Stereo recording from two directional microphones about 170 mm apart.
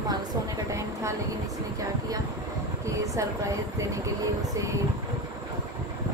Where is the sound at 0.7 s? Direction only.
20° right (ahead or behind).